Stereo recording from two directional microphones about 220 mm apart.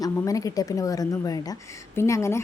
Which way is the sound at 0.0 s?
15° left (ahead or behind).